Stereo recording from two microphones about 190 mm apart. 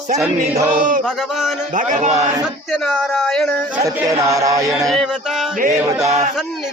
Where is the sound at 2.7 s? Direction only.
5° left (ahead or behind).